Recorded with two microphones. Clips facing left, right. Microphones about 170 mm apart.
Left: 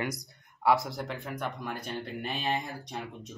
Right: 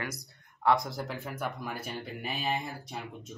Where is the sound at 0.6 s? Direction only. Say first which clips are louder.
Left 1 dB; 5° left (ahead or behind).